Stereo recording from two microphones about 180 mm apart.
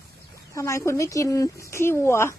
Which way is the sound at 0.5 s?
15° left (ahead or behind).